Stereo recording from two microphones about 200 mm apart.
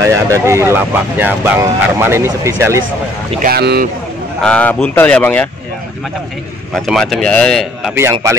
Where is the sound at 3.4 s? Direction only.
50° right (ahead or behind).